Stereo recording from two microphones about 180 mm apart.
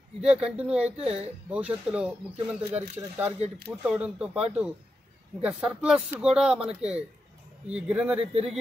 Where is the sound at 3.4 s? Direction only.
35° right (ahead or behind).